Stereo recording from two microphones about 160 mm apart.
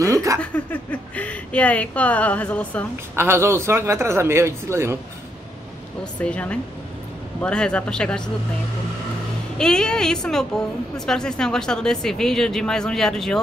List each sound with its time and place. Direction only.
0.0 s a sound: 20° right (ahead or behind)
0.4 s speech: 10° left (ahead or behind)
3.2 s speech: 15° right (ahead or behind)
6.1 s speech: 10° left (ahead or behind)
9.6 s speech: 5° left (ahead or behind)